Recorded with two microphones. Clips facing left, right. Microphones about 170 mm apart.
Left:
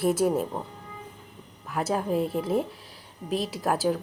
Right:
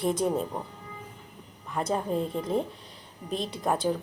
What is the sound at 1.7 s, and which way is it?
Speech, 5° left (ahead or behind).